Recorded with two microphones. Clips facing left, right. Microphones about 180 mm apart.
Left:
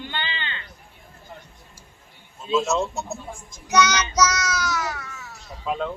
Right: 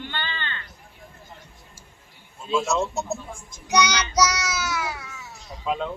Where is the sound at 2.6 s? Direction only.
Centre (ahead or behind).